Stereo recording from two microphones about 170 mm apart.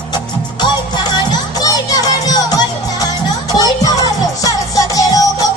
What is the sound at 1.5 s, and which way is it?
Music, 20° left (ahead or behind).